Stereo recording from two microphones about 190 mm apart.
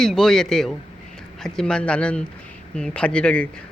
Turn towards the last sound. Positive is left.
turn(degrees=5)  # may be behind; listen again after turning